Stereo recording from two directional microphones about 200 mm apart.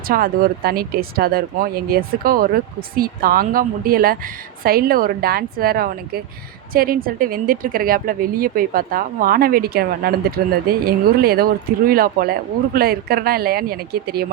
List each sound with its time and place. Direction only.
0.1 s speech: 45° right (ahead or behind)